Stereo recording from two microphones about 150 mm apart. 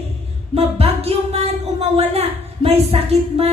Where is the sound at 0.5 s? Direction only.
40° right (ahead or behind).